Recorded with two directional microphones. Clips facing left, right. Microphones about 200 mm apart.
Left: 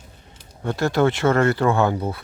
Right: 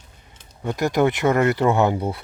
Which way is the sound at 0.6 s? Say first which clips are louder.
Even; 15° right (ahead or behind).